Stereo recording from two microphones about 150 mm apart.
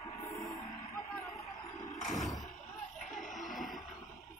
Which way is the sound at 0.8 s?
20° left (ahead or behind).